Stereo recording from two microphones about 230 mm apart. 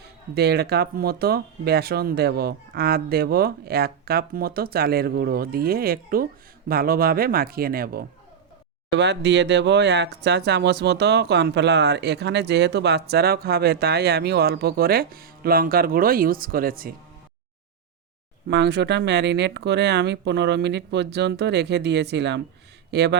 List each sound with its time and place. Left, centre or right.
0.0 s speech: right
18.4 s speech: right